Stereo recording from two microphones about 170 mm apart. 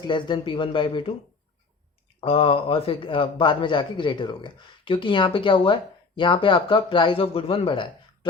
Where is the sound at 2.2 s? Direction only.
35° left (ahead or behind).